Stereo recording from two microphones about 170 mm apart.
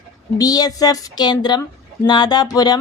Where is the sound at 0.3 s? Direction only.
20° left (ahead or behind).